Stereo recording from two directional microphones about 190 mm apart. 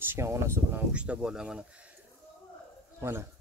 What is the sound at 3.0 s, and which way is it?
Speech, 15° right (ahead or behind).